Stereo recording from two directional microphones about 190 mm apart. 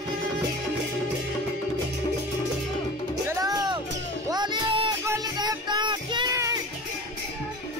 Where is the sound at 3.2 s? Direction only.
20° right (ahead or behind).